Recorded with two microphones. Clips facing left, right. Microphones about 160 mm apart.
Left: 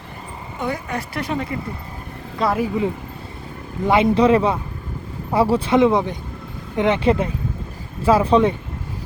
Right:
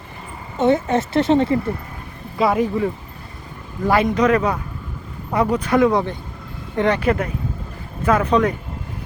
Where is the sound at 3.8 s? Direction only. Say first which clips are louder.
Left 2 dB; 20° left (ahead or behind).